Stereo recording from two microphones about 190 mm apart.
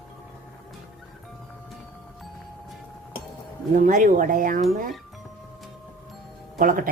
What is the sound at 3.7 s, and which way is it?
Speech, 45° right (ahead or behind).